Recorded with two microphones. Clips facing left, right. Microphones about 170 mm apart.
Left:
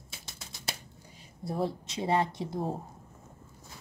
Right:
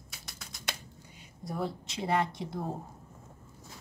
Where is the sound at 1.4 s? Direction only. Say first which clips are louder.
Left 3 dB; 25° left (ahead or behind).